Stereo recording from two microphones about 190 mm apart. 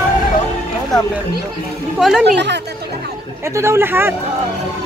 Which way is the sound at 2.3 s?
65° right (ahead or behind).